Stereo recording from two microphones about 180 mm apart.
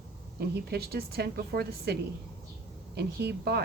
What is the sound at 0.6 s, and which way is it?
A woman's voice, 60° right (ahead or behind).